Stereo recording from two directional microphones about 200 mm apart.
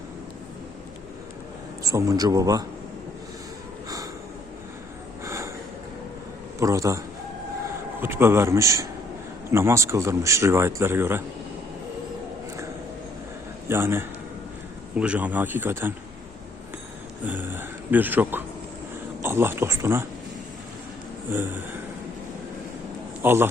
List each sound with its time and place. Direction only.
1.8 s speech: 15° right (ahead or behind)
3.8 s snort: 15° right (ahead or behind)
5.2 s a sound: 15° right (ahead or behind)
6.6 s speech: 15° right (ahead or behind)
8.0 s speech: 10° right (ahead or behind)
13.7 s speech: 10° right (ahead or behind)
17.2 s speech: 10° right (ahead or behind)
21.3 s speech: 10° right (ahead or behind)
23.2 s speech: 10° right (ahead or behind)